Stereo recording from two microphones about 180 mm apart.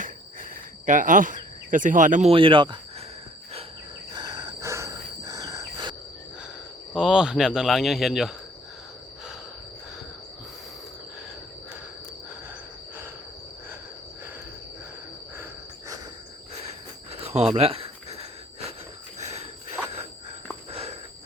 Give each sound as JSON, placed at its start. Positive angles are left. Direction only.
{"t": 0.9, "sound": "speech", "side_deg": -45}
{"t": 2.3, "sound": "speech", "side_deg": -30}
{"t": 4.1, "sound": "insect", "side_deg": -20}
{"t": 6.9, "sound": "speech", "side_deg": -5}
{"t": 17.1, "sound": "cricket", "side_deg": -35}
{"t": 17.5, "sound": "a sound", "side_deg": -35}